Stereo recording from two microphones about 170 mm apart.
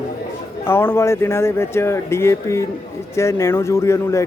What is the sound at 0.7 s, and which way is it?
Speech, 15° left (ahead or behind).